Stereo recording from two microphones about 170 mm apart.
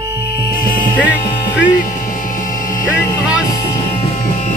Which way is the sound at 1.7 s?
50° left (ahead or behind).